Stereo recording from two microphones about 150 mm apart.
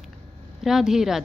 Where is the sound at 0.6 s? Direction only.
5° right (ahead or behind).